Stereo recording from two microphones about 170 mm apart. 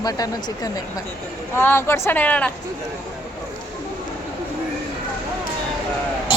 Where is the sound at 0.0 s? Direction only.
20° left (ahead or behind).